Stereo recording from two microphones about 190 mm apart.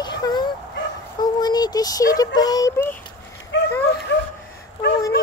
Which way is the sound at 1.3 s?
20° left (ahead or behind).